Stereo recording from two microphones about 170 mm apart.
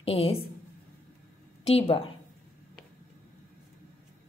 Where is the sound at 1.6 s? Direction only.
35° left (ahead or behind).